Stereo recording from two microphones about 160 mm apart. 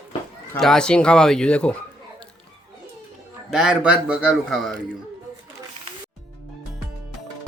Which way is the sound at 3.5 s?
5° right (ahead or behind).